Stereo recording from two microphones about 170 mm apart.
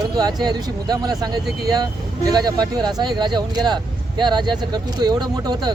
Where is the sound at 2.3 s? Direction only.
25° right (ahead or behind).